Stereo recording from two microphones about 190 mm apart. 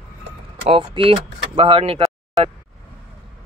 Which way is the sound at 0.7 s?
30° right (ahead or behind).